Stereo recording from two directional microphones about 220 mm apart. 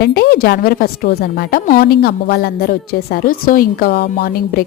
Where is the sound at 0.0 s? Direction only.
45° left (ahead or behind).